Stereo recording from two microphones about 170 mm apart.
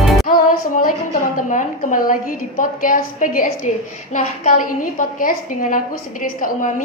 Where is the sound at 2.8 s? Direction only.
55° left (ahead or behind).